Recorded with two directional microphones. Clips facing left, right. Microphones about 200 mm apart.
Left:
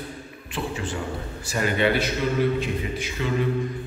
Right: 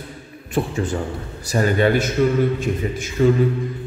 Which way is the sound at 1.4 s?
40° right (ahead or behind).